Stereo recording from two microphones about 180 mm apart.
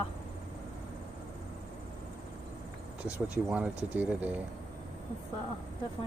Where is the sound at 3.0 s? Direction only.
5° right (ahead or behind).